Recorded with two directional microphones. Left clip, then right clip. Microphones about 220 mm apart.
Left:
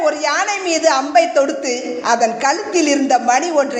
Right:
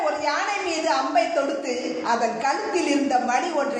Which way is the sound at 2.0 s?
45° left (ahead or behind).